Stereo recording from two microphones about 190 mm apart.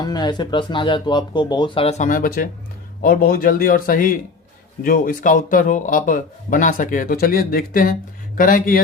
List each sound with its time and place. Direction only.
0.0 s speech: 20° left (ahead or behind); by 8.8 s 45° left (ahead or behind)